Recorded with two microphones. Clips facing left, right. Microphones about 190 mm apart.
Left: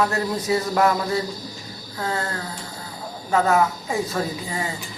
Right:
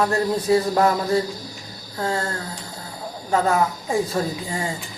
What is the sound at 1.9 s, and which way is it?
Speech, 30° right (ahead or behind).